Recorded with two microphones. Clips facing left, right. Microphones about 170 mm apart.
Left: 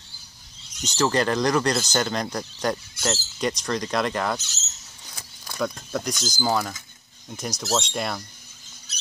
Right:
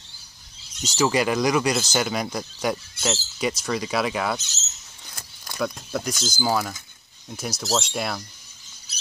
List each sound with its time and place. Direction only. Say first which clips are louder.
0.6 s speech: right 1 dB; 5° right (ahead or behind)
5.1 s a sound: even; centre (ahead or behind)
5.8 s speech: even; 5° right (ahead or behind)